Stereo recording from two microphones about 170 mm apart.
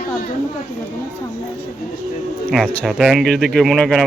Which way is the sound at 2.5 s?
5° left (ahead or behind).